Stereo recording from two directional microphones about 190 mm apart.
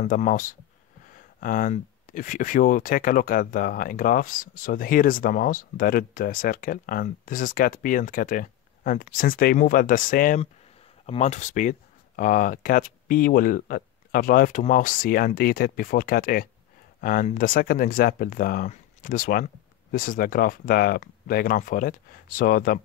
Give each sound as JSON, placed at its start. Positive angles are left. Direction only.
{"t": 0.0, "sound": "speech", "side_deg": 40}